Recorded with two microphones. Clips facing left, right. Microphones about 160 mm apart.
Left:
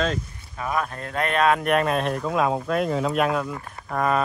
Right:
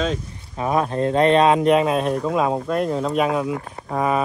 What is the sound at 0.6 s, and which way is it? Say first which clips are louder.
Speech: right 7 dB; 30° right (ahead or behind).